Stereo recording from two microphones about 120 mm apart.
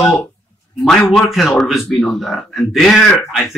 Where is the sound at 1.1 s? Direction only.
Centre (ahead or behind).